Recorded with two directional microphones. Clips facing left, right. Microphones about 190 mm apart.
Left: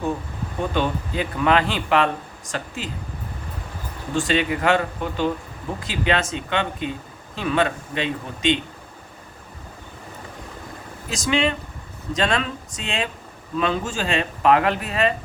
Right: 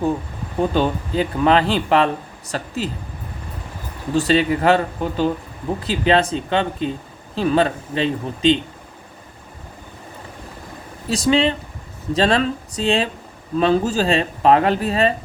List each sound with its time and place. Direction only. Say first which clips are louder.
0.7 s speech: right 4 dB; 35° right (ahead or behind)
4.1 s speech: right 5 dB; 35° right (ahead or behind)
11.1 s speech: right 5 dB; 35° right (ahead or behind)